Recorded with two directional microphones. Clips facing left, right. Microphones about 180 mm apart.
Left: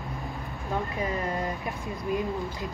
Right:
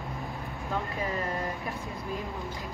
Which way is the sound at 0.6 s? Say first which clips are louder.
Left 3 dB; 20° left (ahead or behind).